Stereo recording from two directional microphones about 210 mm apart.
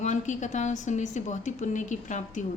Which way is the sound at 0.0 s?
35° left (ahead or behind).